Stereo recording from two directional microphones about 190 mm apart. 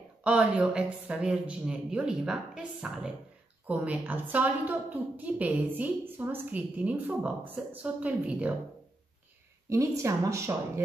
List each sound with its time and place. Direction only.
0.2 s a woman's voice: 5° right (ahead or behind)
9.7 s a woman's voice: 15° right (ahead or behind)